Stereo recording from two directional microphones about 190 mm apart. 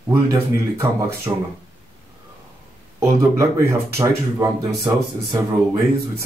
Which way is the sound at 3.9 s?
15° right (ahead or behind).